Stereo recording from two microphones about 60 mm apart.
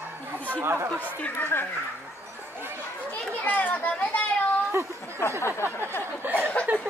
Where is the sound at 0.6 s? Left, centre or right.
Right.